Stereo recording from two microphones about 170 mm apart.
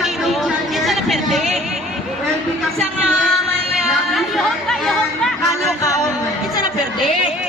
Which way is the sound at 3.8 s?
Centre (ahead or behind).